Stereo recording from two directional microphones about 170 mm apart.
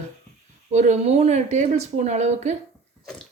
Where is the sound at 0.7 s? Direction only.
45° right (ahead or behind).